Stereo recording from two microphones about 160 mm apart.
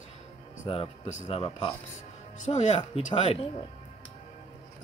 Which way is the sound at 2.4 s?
45° left (ahead or behind).